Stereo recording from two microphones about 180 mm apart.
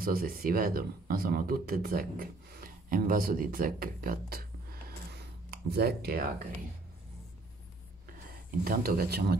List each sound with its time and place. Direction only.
0.0 s speech: 55° right (ahead or behind)
8.3 s speech: 55° right (ahead or behind)